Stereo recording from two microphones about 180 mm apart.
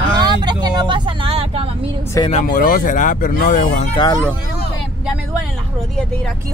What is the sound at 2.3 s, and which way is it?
Speech, 45° left (ahead or behind).